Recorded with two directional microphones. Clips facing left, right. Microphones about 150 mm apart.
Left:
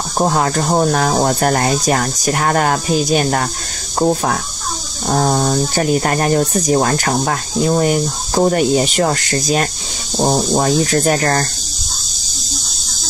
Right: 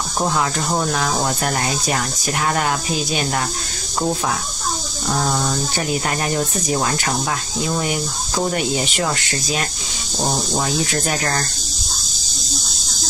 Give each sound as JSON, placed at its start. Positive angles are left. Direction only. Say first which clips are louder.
{"t": 0.2, "sound": "speech", "louder": "left 5 dB", "side_deg": 45}